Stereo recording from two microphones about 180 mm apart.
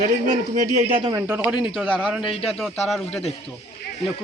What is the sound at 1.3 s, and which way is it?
A man's voice, 5° right (ahead or behind).